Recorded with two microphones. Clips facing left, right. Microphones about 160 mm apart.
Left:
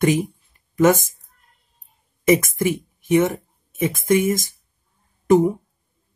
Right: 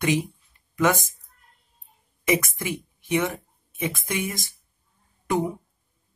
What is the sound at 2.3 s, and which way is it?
Speech, 45° left (ahead or behind).